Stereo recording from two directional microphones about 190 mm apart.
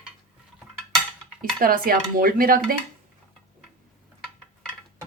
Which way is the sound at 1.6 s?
50° right (ahead or behind).